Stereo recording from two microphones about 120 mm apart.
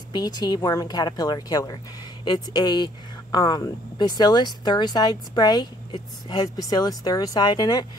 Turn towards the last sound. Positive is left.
turn(degrees=35)  # may be behind; listen again after turning